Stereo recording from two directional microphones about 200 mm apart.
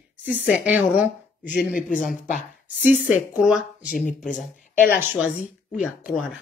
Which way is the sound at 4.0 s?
40° left (ahead or behind).